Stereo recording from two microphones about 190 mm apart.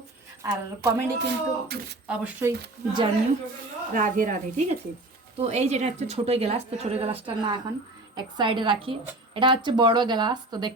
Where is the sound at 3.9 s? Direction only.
45° right (ahead or behind).